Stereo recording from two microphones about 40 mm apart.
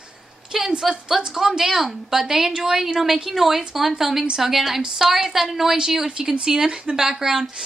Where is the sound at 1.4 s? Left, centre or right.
Centre.